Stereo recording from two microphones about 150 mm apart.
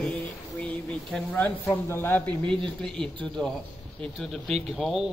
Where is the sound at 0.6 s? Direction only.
5° left (ahead or behind).